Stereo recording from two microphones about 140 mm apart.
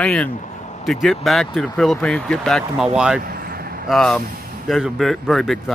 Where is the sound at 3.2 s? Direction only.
90° right.